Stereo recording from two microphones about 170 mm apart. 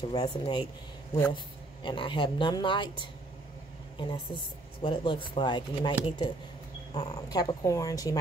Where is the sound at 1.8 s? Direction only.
30° left (ahead or behind).